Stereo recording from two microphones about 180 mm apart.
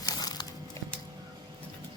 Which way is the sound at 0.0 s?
20° left (ahead or behind).